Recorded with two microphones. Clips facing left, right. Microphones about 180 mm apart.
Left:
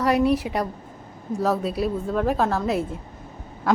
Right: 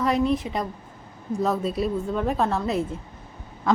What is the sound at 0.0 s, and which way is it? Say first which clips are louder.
A woman's voice: left 2 dB; 5° left (ahead or behind).